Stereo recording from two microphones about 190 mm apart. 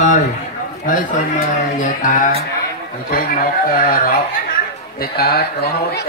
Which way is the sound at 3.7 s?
50° left (ahead or behind).